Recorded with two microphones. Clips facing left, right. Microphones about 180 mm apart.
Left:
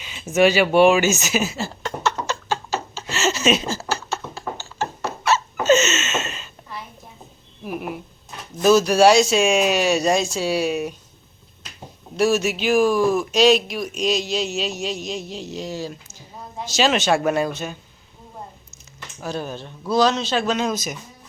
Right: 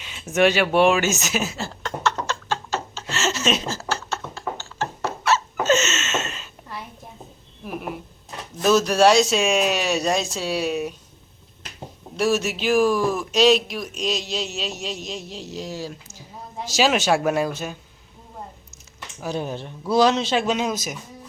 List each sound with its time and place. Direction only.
0.0 s a sound: centre (ahead or behind)
7.6 s speech: 5° left (ahead or behind)
12.1 s speech: centre (ahead or behind)
19.2 s speech: 15° right (ahead or behind)